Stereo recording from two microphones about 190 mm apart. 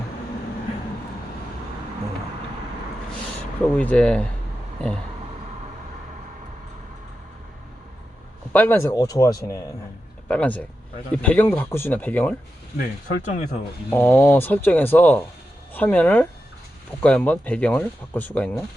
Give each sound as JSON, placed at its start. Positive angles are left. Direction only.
{"t": 3.8, "sound": "speech", "side_deg": 5}
{"t": 8.5, "sound": "speech", "side_deg": 10}
{"t": 12.7, "sound": "speech", "side_deg": 50}
{"t": 13.9, "sound": "speech", "side_deg": 10}